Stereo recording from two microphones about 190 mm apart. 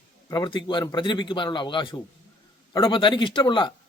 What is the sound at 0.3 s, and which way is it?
A man's voice, 20° left (ahead or behind).